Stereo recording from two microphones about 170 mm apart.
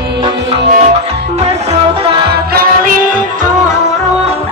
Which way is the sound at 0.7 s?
40° right (ahead or behind).